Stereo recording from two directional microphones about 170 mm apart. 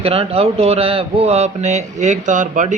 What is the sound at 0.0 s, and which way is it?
Speech, 35° right (ahead or behind).